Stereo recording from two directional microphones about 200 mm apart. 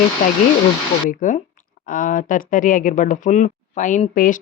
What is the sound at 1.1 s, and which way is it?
Speech, 40° left (ahead or behind).